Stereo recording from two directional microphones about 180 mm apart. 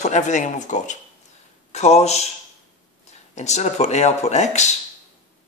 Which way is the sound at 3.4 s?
40° left (ahead or behind).